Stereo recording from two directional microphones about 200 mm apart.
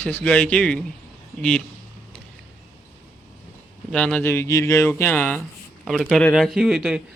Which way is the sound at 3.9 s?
5° left (ahead or behind).